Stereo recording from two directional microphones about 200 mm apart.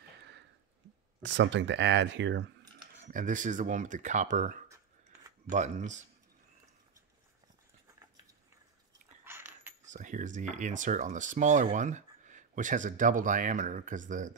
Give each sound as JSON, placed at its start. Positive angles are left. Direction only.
{"t": 1.2, "sound": "speech", "side_deg": -65}
{"t": 3.0, "sound": "speech", "side_deg": -40}
{"t": 9.2, "sound": "coin", "side_deg": -10}
{"t": 9.8, "sound": "speech", "side_deg": -40}